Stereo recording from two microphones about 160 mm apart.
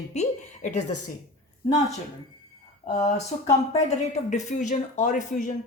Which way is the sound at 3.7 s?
45° left (ahead or behind).